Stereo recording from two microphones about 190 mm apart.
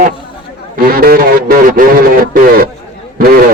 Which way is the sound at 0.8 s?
50° right (ahead or behind).